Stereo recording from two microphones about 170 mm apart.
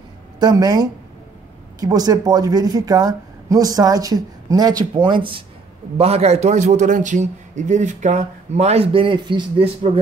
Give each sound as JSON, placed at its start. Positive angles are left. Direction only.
{"t": 0.4, "sound": "a woman's voice", "side_deg": -25}